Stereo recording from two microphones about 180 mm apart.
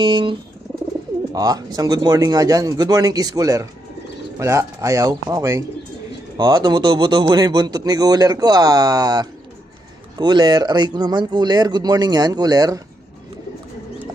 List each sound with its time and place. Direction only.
0.0 s speech: 25° right (ahead or behind)